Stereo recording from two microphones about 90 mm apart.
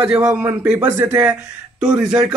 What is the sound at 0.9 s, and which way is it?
Speech, 30° right (ahead or behind).